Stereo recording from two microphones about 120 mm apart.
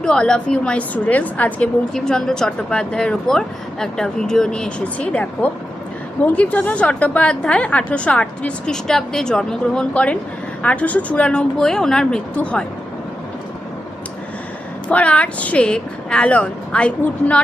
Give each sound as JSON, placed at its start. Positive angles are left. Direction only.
{"t": 0.0, "sound": "a woman's voice", "side_deg": 5}
{"t": 14.8, "sound": "a woman's voice", "side_deg": 10}